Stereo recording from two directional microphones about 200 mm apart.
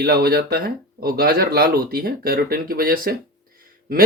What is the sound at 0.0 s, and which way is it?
Speech, 50° right (ahead or behind).